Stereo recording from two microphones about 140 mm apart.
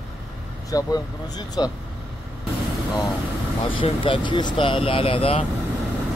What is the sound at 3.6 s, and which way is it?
Speech, 40° left (ahead or behind).